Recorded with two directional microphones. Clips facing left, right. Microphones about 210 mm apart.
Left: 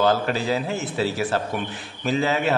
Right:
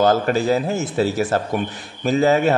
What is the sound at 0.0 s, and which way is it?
A man's voice, 45° right (ahead or behind).